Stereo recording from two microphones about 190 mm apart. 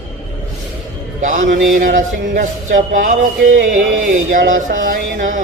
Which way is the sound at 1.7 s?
45° right (ahead or behind).